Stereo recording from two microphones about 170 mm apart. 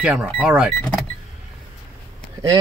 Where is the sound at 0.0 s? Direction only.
5° right (ahead or behind).